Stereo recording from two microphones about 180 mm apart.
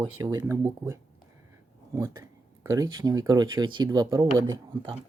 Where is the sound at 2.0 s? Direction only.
15° right (ahead or behind).